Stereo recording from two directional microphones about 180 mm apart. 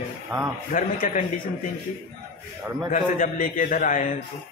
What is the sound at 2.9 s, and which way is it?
A man's voice, 50° left (ahead or behind).